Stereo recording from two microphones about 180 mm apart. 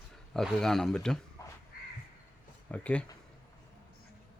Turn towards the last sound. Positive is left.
turn(degrees=5)  # may be behind; listen again after turning